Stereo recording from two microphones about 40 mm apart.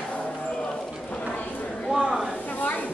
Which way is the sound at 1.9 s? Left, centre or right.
Centre.